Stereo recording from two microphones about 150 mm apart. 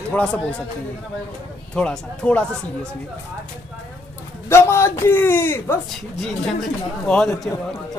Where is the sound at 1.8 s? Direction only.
5° left (ahead or behind).